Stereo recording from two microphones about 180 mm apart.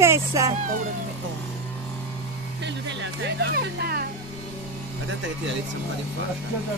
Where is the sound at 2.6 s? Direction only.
75° right (ahead or behind); by 4.1 s 60° right (ahead or behind).